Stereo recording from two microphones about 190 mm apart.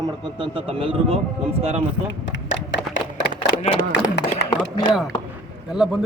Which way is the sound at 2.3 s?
70° left (ahead or behind).